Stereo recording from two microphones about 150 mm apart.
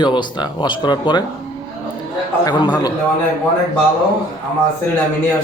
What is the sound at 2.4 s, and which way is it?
Speech, 25° left (ahead or behind).